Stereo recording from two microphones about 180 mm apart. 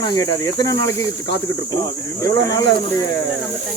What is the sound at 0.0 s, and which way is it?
Speech, 20° left (ahead or behind).